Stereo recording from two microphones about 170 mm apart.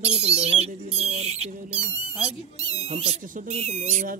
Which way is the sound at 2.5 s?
35° right (ahead or behind).